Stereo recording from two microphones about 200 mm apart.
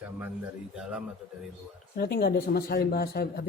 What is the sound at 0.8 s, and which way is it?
Speech, 5° right (ahead or behind).